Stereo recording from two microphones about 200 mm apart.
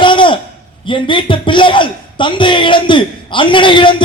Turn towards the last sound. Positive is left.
turn(degrees=25)  # may be behind; listen again after turning